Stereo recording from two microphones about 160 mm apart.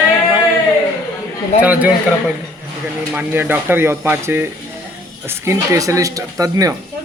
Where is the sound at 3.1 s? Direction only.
10° right (ahead or behind).